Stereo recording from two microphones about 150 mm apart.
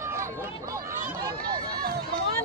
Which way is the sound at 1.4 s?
90° right.